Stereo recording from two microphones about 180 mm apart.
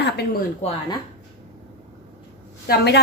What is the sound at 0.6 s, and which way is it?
Speech, 35° left (ahead or behind).